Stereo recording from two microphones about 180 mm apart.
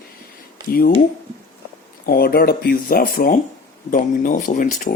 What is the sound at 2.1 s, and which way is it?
Speech, 55° left (ahead or behind).